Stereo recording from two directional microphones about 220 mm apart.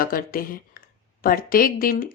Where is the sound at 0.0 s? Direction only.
40° left (ahead or behind).